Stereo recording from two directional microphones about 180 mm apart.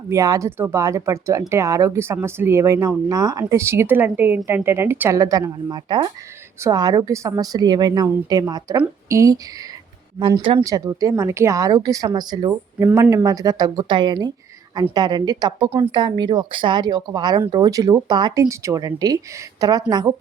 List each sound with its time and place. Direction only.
0.1 s a woman's voice: 15° right (ahead or behind)
10.4 s a woman's voice: 25° right (ahead or behind)